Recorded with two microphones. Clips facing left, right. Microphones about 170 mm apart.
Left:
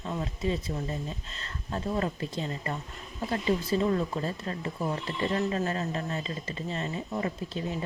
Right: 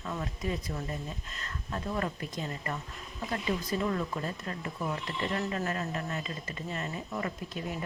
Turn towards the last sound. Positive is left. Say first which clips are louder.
# left 4 dB
turn(degrees=25)  # may be behind; listen again after turning